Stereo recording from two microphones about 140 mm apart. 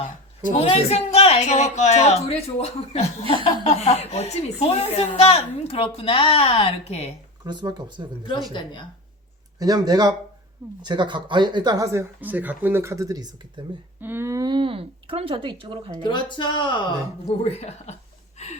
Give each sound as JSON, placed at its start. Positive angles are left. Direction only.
{"t": 0.5, "sound": "a woman's voice", "side_deg": 45}
{"t": 7.4, "sound": "speech", "side_deg": -30}
{"t": 9.6, "sound": "speech", "side_deg": -25}
{"t": 13.6, "sound": "speech", "side_deg": -35}
{"t": 14.0, "sound": "speech", "side_deg": -15}
{"t": 16.0, "sound": "speech", "side_deg": 35}
{"t": 17.2, "sound": "a woman's voice", "side_deg": 50}
{"t": 18.4, "sound": "gasp", "side_deg": 55}